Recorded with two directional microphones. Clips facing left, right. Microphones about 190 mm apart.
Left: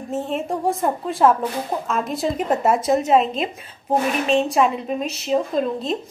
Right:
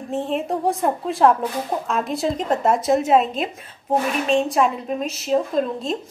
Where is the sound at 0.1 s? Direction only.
Centre (ahead or behind).